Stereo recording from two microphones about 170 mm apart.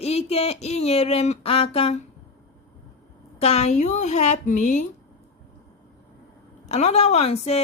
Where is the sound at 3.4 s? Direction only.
40° left (ahead or behind).